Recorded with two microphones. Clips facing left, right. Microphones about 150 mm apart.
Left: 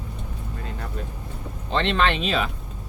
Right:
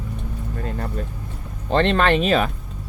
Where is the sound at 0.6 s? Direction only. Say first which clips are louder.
Right 8 dB; 50° right (ahead or behind).